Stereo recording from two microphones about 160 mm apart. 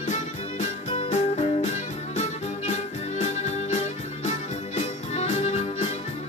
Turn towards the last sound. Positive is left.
turn(degrees=45)  # may be behind; listen again after turning